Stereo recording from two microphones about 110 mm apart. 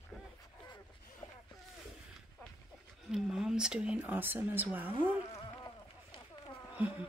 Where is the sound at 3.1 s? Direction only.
5° right (ahead or behind).